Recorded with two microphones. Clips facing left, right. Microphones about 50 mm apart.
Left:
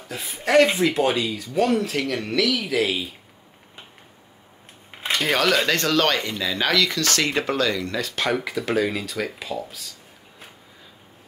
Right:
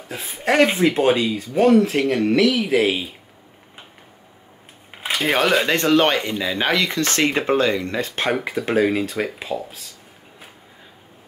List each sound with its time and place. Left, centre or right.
0.4 s speech: right
4.9 s a sound: centre
5.2 s speech: right